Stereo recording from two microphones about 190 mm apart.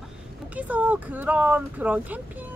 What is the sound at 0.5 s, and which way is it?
A woman's voice, 5° right (ahead or behind).